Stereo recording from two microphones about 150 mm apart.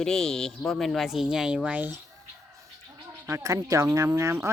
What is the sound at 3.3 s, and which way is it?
Speech, 20° right (ahead or behind).